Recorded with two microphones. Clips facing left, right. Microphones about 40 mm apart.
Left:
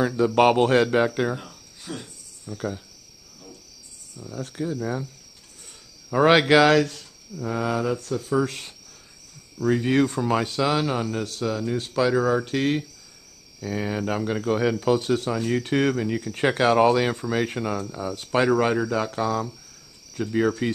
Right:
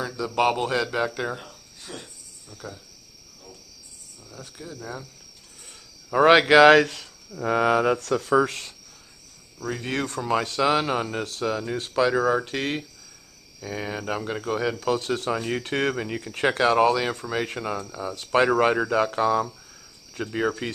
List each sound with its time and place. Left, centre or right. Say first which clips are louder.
0.0 s a man's voice: left 5 dB; left
0.9 s speech: left 5 dB; centre
1.3 s cricket: left 2 dB; centre
2.5 s a man's voice: left 9 dB; left
4.7 s speech: left 4 dB; left
6.0 s speech: right 1 dB; centre
7.3 s speech: right 5 dB; right
8.0 s speech: right 4 dB; right
9.7 s speech: left 8 dB; centre
10.6 s speech: right 1 dB; centre
15.2 s speech: left 2 dB; centre
15.6 s speech: left 3 dB; centre
16.3 s speech: left 1 dB; centre
18.5 s speech: right 1 dB; centre